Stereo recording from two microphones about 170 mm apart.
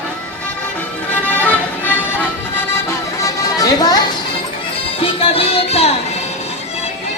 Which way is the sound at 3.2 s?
20° left (ahead or behind).